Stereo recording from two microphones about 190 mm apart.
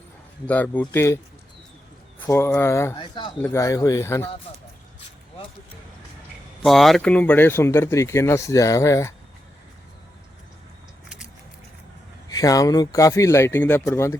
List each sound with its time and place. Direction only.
0.4 s speech: 10° left (ahead or behind)
6.6 s speech: centre (ahead or behind)
12.3 s speech: 20° left (ahead or behind)